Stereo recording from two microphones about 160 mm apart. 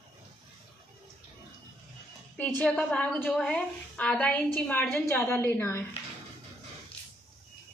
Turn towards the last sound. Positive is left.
turn(degrees=15)  # may be behind; listen again after turning